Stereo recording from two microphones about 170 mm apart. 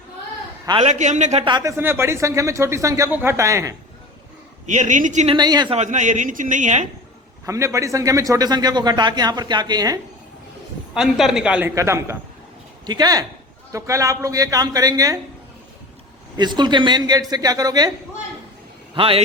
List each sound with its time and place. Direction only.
0.8 s speech: 45° right (ahead or behind)
1.5 s a man's voice: 25° right (ahead or behind)
1.7 s speech: 15° right (ahead or behind)
4.7 s speech: 45° right (ahead or behind)
5.3 s a man's voice: 25° right (ahead or behind)
5.7 s speech: 45° right (ahead or behind)
7.4 s a man's voice: 15° right (ahead or behind)
10.9 s a woman's voice: centre (ahead or behind)
11.7 s a man's voice: 15° right (ahead or behind)
16.4 s a man's voice: 25° right (ahead or behind)
18.9 s speech: 30° right (ahead or behind)